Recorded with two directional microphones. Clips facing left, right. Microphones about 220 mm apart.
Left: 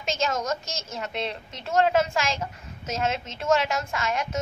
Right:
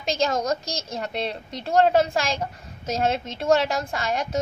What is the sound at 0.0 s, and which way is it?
A woman's voice, 35° right (ahead or behind).